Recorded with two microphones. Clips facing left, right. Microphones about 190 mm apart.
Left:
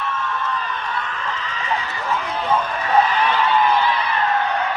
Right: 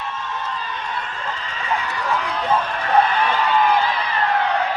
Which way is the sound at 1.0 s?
30° right (ahead or behind).